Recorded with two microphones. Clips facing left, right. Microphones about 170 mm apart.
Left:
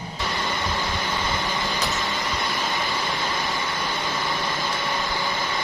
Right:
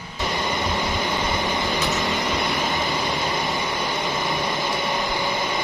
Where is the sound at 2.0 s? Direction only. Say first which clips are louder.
Right 4 dB; 15° right (ahead or behind).